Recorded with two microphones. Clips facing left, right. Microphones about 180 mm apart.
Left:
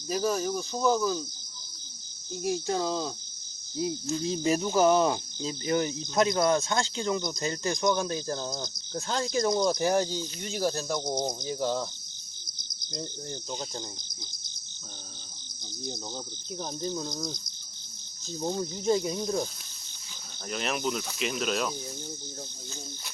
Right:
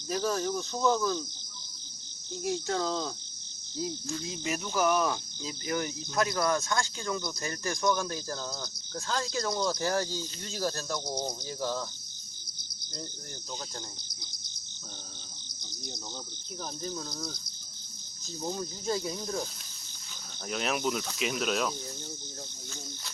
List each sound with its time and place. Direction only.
0.1 s cricket: 15° left (ahead or behind)
2.4 s cricket: 15° left (ahead or behind)
4.2 s speech: 30° left (ahead or behind)
16.6 s speech: 25° left (ahead or behind)
20.5 s speech: centre (ahead or behind)